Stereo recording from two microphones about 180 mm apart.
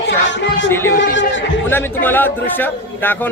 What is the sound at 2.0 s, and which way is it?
A man's voice, 10° left (ahead or behind).